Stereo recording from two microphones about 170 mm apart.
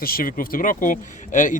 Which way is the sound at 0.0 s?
60° left (ahead or behind).